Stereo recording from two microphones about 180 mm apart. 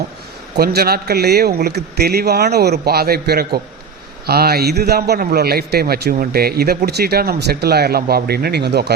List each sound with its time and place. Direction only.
0.5 s a man's voice: 60° right (ahead or behind)